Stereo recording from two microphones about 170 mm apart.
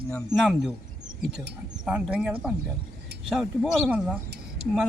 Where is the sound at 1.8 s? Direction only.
5° right (ahead or behind).